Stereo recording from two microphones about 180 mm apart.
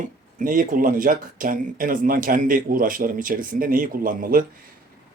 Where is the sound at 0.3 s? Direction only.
45° right (ahead or behind).